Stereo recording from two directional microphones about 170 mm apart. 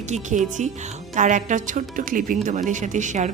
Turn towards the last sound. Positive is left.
turn(degrees=-45)  # may be behind; listen again after turning